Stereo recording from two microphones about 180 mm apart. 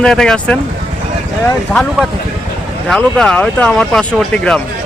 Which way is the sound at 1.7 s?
5° left (ahead or behind).